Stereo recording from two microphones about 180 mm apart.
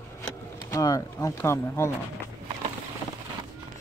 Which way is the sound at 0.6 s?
20° left (ahead or behind).